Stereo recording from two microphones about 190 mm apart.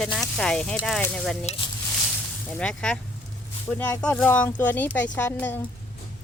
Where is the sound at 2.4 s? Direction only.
5° left (ahead or behind).